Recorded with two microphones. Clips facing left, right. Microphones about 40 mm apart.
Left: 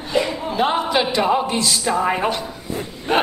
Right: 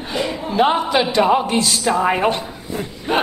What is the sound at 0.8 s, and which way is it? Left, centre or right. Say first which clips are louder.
Speech: right 1 dB; centre.